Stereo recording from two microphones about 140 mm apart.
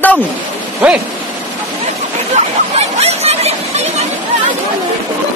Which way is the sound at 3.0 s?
50° right (ahead or behind).